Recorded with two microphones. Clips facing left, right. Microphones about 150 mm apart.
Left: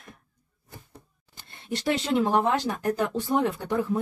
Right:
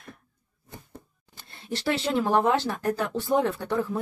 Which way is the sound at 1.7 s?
20° left (ahead or behind).